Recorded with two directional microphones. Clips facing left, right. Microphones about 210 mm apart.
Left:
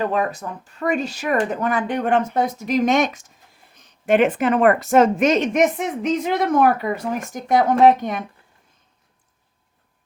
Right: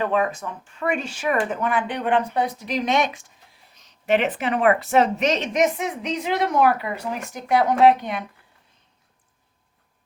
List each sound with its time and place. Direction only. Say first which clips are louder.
0.0 s speech: left 1 dB; 40° left (ahead or behind)